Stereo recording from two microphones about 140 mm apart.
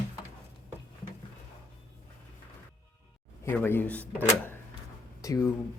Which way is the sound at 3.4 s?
15° left (ahead or behind).